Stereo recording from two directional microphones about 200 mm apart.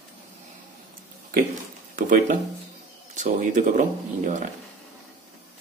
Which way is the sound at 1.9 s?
40° right (ahead or behind).